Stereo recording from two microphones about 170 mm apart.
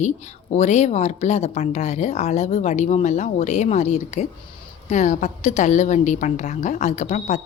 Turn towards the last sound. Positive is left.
turn(degrees=40)  # may be behind; listen again after turning